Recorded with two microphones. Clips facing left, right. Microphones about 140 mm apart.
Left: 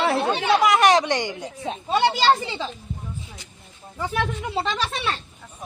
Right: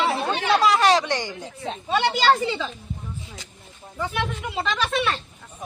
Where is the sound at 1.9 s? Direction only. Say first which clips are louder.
Left 2 dB; 35° left (ahead or behind).